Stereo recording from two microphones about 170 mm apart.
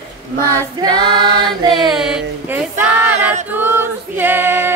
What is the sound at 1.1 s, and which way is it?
Choir, 70° right (ahead or behind).